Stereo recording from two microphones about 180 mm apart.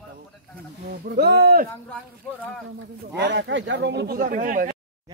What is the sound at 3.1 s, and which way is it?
Speech, 75° right (ahead or behind).